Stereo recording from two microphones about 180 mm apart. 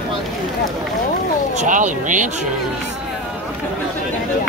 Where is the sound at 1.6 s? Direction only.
45° right (ahead or behind).